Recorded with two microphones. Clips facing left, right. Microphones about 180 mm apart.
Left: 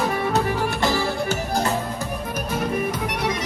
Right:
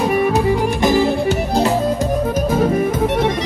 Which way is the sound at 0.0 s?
15° right (ahead or behind).